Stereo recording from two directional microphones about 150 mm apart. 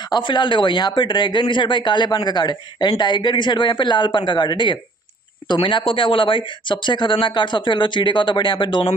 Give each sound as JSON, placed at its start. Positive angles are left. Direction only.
{"t": 0.1, "sound": "speech", "side_deg": 30}